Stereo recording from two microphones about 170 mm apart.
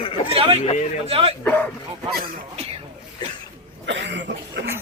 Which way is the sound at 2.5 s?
35° right (ahead or behind).